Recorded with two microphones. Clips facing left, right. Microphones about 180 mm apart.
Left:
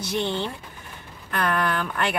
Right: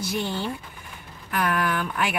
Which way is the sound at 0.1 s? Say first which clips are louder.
Left 4 dB; 5° right (ahead or behind).